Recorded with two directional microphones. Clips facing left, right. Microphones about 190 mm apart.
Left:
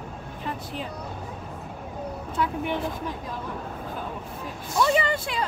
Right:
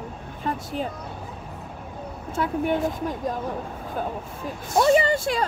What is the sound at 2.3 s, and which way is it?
A woman's voice, 45° right (ahead or behind).